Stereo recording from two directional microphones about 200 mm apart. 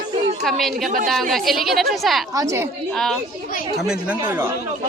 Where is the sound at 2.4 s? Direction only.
15° right (ahead or behind).